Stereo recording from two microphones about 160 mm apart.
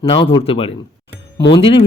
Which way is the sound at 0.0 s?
35° left (ahead or behind).